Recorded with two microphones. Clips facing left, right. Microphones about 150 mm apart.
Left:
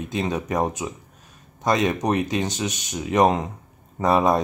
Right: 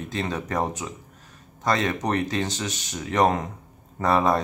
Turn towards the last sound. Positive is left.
turn(degrees=15)  # may be behind; listen again after turning